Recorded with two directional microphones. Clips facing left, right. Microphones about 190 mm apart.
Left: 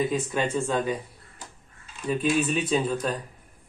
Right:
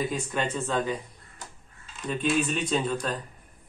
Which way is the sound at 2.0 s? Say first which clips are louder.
Left 2 dB; 5° left (ahead or behind).